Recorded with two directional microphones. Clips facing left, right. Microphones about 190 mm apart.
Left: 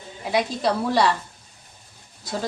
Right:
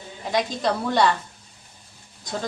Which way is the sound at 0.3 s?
5° left (ahead or behind).